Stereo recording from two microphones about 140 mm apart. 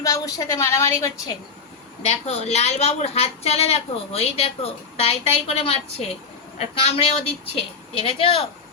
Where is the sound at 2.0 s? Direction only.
50° left (ahead or behind).